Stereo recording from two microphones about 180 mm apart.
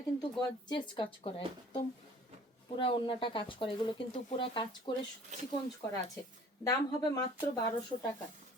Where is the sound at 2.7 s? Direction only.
30° left (ahead or behind).